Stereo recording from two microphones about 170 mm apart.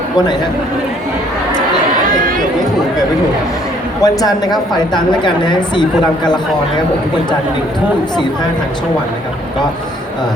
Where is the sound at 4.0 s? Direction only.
20° left (ahead or behind).